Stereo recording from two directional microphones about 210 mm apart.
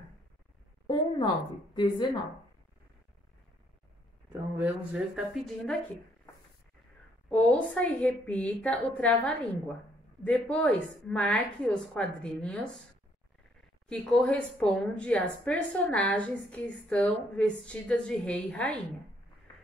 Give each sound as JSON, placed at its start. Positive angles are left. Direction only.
{"t": 0.8, "sound": "a woman's voice", "side_deg": 20}
{"t": 4.3, "sound": "a woman's voice", "side_deg": -5}
{"t": 7.2, "sound": "a woman's voice", "side_deg": 5}
{"t": 13.8, "sound": "a woman's voice", "side_deg": 5}